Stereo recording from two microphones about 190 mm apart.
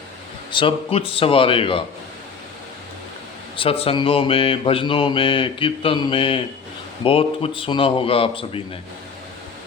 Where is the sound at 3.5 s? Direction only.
30° left (ahead or behind).